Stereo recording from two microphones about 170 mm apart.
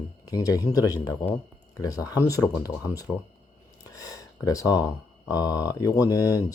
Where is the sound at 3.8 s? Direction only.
20° left (ahead or behind).